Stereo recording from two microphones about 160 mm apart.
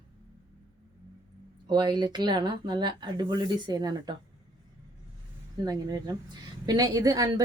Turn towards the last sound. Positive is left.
turn(degrees=-20)  # may be behind; listen again after turning